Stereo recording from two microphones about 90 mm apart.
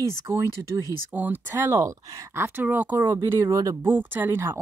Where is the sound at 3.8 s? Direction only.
20° right (ahead or behind).